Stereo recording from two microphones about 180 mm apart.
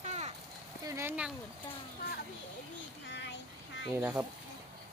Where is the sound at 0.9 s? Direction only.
15° right (ahead or behind).